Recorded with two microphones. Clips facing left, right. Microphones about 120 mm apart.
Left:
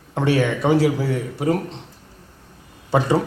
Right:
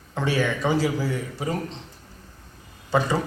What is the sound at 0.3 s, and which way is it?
A woman's voice, 65° left (ahead or behind).